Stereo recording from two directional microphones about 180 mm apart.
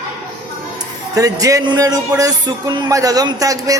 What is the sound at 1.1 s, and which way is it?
Speech, 20° right (ahead or behind).